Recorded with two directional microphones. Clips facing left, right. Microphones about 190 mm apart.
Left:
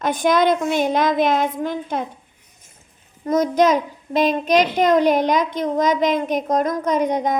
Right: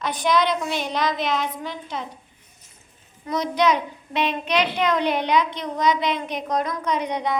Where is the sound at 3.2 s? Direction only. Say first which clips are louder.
Left 5 dB; 45° left (ahead or behind).